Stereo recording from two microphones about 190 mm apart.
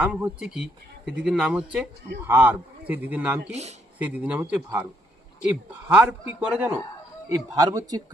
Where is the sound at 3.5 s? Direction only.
35° right (ahead or behind).